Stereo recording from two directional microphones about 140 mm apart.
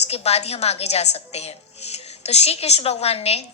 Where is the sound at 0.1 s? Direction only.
50° left (ahead or behind).